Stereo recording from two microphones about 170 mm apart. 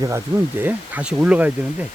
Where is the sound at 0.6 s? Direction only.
10° right (ahead or behind).